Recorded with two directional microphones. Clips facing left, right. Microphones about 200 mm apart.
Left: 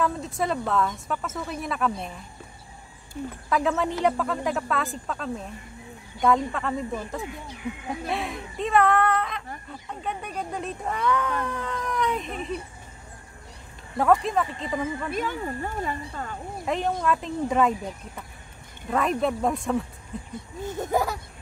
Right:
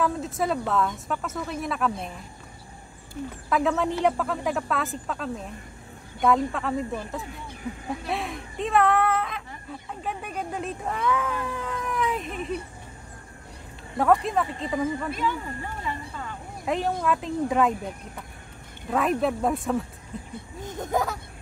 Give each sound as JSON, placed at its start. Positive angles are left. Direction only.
{"t": 0.0, "sound": "speech", "side_deg": 0}
{"t": 3.4, "sound": "speech", "side_deg": 0}
{"t": 13.9, "sound": "speech", "side_deg": 0}
{"t": 15.1, "sound": "speech", "side_deg": 45}
{"t": 16.6, "sound": "speech", "side_deg": 0}